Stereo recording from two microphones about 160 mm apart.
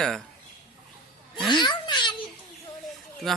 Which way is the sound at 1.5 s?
30° left (ahead or behind).